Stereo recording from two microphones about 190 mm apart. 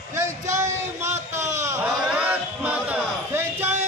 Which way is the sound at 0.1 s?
15° right (ahead or behind).